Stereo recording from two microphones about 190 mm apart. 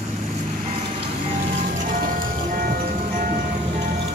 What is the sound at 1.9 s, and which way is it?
Music, 45° right (ahead or behind).